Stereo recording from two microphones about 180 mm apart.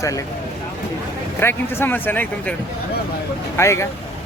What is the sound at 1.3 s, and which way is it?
Speech, 15° left (ahead or behind).